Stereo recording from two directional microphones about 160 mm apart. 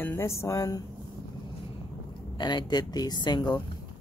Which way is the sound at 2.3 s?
25° left (ahead or behind).